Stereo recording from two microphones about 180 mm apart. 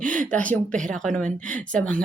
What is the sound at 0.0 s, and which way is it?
Speech, 45° right (ahead or behind).